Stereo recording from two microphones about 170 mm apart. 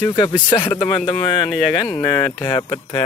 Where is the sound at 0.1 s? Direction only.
25° left (ahead or behind).